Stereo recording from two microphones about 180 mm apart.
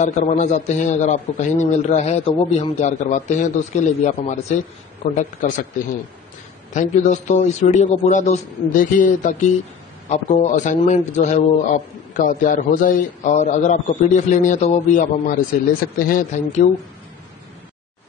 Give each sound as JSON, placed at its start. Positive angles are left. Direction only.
{"t": 0.0, "sound": "a man's voice", "side_deg": 40}
{"t": 6.7, "sound": "a man's voice", "side_deg": 40}